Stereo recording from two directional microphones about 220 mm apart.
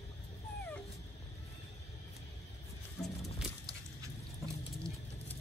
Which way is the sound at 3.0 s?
Centre (ahead or behind).